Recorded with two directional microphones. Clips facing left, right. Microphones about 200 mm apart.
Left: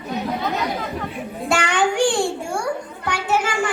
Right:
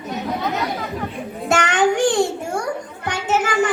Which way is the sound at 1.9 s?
20° right (ahead or behind).